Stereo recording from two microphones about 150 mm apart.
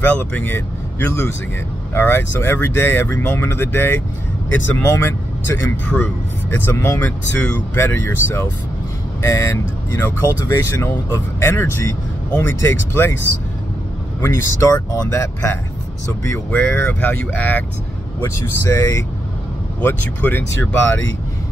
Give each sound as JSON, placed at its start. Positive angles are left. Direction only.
{"t": 0.0, "sound": "speech", "side_deg": 15}
{"t": 14.2, "sound": "speech", "side_deg": 20}